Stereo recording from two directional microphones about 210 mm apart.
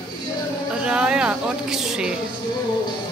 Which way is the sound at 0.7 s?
5° right (ahead or behind).